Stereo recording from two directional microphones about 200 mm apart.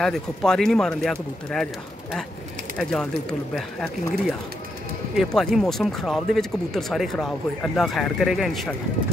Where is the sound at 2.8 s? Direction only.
5° left (ahead or behind).